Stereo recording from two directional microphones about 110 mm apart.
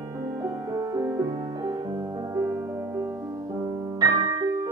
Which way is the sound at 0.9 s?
35° right (ahead or behind).